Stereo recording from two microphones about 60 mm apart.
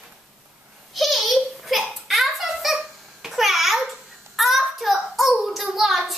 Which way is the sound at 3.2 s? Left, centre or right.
Centre.